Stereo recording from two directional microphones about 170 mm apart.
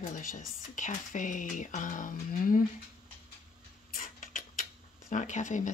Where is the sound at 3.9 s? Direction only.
55° left (ahead or behind).